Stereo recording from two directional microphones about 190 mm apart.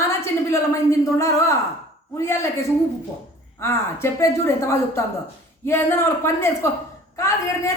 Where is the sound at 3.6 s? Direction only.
15° left (ahead or behind).